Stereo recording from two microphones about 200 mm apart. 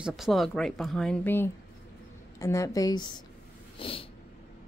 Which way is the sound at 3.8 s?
25° left (ahead or behind).